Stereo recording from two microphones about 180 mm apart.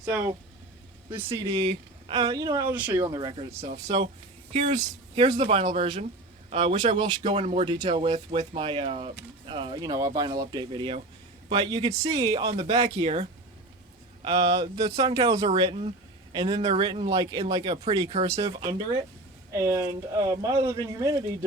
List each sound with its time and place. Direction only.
0.0 s speech: 15° right (ahead or behind)
1.5 s speech: 30° right (ahead or behind)